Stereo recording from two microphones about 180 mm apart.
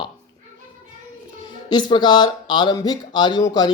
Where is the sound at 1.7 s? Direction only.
25° left (ahead or behind).